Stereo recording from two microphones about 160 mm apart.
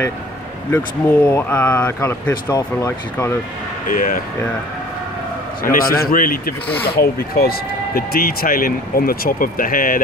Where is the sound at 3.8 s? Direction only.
60° left (ahead or behind).